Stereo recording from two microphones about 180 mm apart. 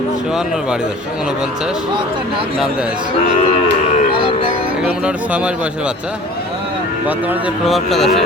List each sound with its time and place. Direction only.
4.1 s music: 30° left (ahead or behind)
4.8 s speech: 5° right (ahead or behind)
7.7 s speech: centre (ahead or behind)